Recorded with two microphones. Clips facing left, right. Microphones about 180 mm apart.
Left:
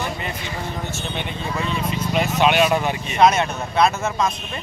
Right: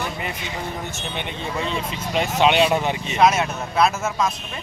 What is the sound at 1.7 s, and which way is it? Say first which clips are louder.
Speech: left 2 dB; 30° right (ahead or behind).